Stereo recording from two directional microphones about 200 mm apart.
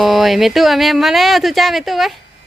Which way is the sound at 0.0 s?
Centre (ahead or behind).